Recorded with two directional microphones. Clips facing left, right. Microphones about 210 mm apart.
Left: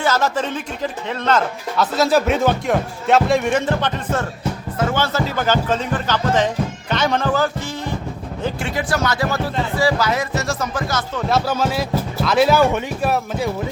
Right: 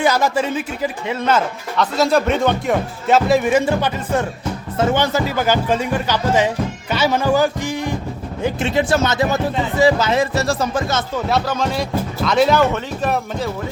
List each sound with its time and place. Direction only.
0.0 s speech: 15° right (ahead or behind)
1.7 s speech: 5° left (ahead or behind); by 11.0 s 25° right (ahead or behind)
11.3 s speech: 5° left (ahead or behind)